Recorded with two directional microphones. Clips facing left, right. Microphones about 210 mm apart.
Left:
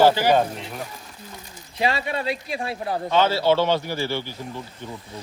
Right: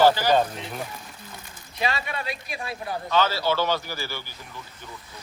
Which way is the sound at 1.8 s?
30° left (ahead or behind).